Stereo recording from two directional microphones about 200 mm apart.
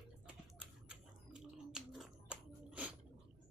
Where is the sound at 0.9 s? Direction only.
5° right (ahead or behind).